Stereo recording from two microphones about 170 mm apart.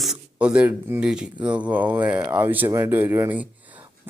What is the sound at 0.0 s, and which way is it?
Speech, 5° right (ahead or behind).